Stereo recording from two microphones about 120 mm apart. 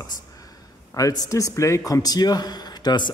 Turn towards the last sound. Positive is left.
turn(degrees=35)  # may be behind; listen again after turning